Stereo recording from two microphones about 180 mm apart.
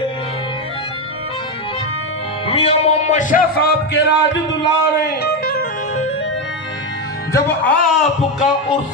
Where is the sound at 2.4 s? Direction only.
35° left (ahead or behind); by 5.7 s 60° left (ahead or behind).